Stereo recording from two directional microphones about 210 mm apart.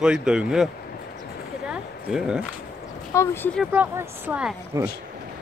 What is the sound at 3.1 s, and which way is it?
Speech, 10° left (ahead or behind).